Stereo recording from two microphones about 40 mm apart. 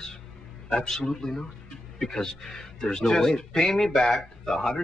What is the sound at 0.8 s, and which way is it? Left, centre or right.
Speech, centre.